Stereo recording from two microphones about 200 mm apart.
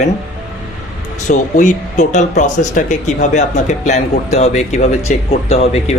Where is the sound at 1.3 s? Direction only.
40° left (ahead or behind).